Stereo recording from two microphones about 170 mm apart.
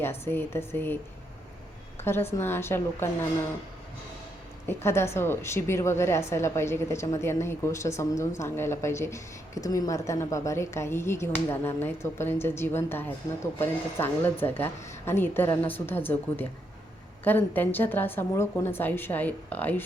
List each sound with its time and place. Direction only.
0.0 s speech: 15° left (ahead or behind)
2.0 s speech: 15° left (ahead or behind)
4.6 s speech: 15° left (ahead or behind)